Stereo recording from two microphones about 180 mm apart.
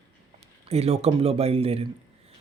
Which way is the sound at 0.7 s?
35° right (ahead or behind).